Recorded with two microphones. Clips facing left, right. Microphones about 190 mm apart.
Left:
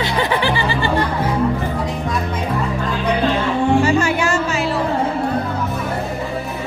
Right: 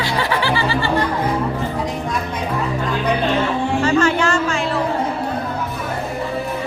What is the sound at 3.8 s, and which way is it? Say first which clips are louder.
Music: even; 10° left (ahead or behind).